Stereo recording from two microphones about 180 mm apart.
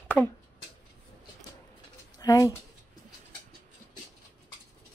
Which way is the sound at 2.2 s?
20° left (ahead or behind).